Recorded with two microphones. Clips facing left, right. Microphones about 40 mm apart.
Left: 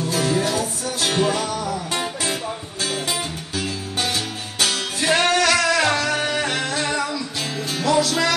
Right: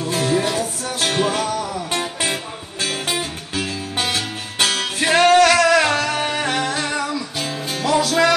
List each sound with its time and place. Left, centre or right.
0.1 s music: right
2.8 s music: right
5.0 s music: right
5.3 s music: centre
7.8 s music: centre